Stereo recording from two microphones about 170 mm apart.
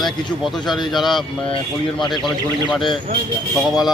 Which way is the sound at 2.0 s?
25° left (ahead or behind).